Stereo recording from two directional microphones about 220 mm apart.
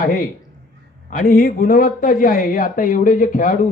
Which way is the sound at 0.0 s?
35° left (ahead or behind).